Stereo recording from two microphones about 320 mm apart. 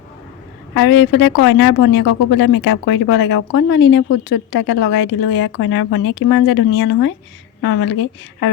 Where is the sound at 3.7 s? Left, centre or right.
Left.